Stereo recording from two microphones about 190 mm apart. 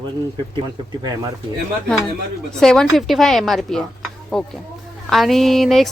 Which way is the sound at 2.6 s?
5° left (ahead or behind).